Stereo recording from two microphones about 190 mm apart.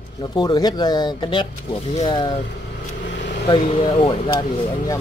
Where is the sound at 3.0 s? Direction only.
65° left (ahead or behind).